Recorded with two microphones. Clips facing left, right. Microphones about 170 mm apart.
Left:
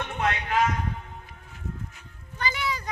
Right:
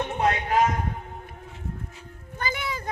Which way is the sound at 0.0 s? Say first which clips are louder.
Right 4 dB; 30° right (ahead or behind).